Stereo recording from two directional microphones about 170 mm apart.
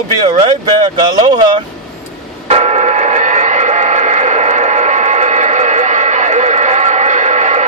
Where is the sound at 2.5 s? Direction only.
40° right (ahead or behind).